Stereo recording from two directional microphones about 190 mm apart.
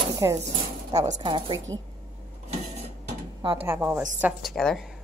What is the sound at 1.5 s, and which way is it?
Speech, 90° right.